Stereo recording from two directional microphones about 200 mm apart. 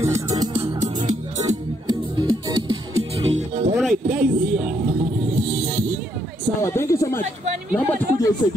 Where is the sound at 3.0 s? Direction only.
80° right.